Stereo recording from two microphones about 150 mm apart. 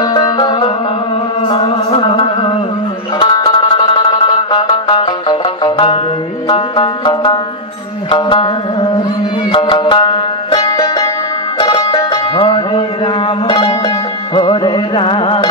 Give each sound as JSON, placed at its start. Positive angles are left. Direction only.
{"t": 0.0, "sound": "music", "side_deg": 30}
{"t": 9.5, "sound": "music", "side_deg": 30}